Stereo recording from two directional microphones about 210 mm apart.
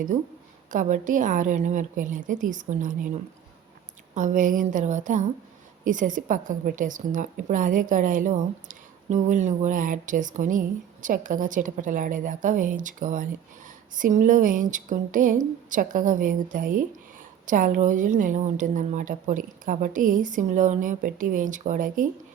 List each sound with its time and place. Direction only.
0.7 s a woman's voice: 40° right (ahead or behind)
4.1 s a woman's voice: 35° right (ahead or behind)